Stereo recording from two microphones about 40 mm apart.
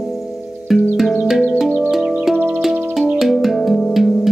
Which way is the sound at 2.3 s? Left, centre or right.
Right.